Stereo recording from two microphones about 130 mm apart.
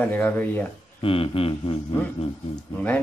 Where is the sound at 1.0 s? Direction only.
45° left (ahead or behind).